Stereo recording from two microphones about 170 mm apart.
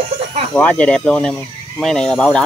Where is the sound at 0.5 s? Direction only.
5° left (ahead or behind).